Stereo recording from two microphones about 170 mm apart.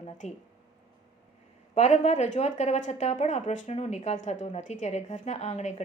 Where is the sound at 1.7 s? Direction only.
40° left (ahead or behind).